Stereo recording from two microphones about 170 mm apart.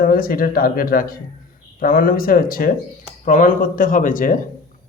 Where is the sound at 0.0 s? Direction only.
60° left (ahead or behind).